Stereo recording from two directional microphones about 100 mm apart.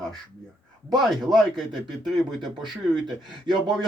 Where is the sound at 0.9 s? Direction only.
Centre (ahead or behind).